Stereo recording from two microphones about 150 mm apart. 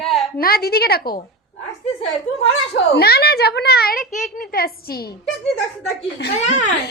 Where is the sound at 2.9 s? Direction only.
90° left.